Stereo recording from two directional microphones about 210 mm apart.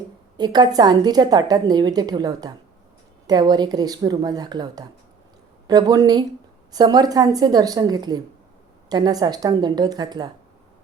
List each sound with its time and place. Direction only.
0.3 s a woman's voice: 20° right (ahead or behind)